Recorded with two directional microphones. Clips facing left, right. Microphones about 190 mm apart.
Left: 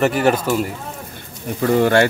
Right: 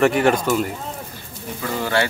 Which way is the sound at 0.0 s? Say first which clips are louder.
Even; 5° left (ahead or behind).